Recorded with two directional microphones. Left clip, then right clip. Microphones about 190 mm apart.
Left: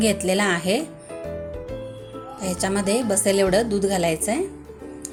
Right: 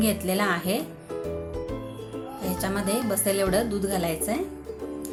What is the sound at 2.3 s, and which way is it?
A woman's voice, 40° left (ahead or behind).